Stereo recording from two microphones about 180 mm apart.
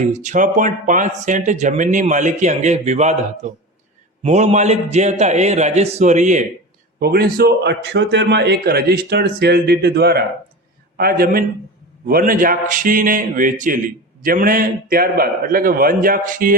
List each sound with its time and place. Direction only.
0.0 s a man's voice: 40° right (ahead or behind)
7.0 s a man's voice: 60° right (ahead or behind)